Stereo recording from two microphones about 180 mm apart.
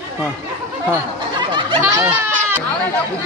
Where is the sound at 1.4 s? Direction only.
30° right (ahead or behind).